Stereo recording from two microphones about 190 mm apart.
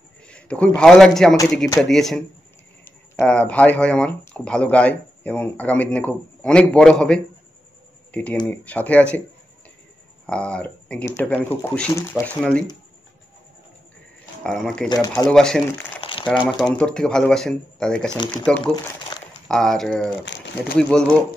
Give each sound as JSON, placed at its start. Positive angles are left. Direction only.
{"t": 0.3, "sound": "a man's voice", "side_deg": 5}
{"t": 10.2, "sound": "speech", "side_deg": 5}
{"t": 14.4, "sound": "speech", "side_deg": 5}
{"t": 14.9, "sound": "speech", "side_deg": 20}
{"t": 15.2, "sound": "speech", "side_deg": 5}
{"t": 16.0, "sound": "crumpling", "side_deg": 30}
{"t": 16.7, "sound": "speech", "side_deg": 5}
{"t": 18.6, "sound": "speech", "side_deg": 25}
{"t": 19.4, "sound": "speech", "side_deg": 0}
{"t": 20.2, "sound": "speech", "side_deg": 65}
{"t": 20.7, "sound": "speech", "side_deg": 5}